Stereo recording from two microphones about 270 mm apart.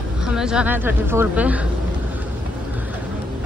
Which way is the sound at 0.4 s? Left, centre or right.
Centre.